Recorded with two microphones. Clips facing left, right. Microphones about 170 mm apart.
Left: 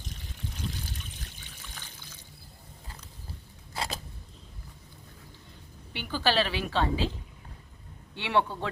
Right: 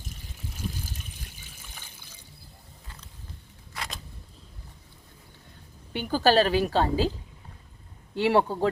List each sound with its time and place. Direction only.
0.5 s water: 10° right (ahead or behind)
5.9 s a woman's voice: 45° right (ahead or behind)
8.1 s a woman's voice: 40° right (ahead or behind)